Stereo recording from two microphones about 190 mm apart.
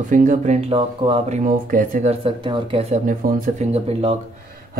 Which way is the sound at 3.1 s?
45° right (ahead or behind).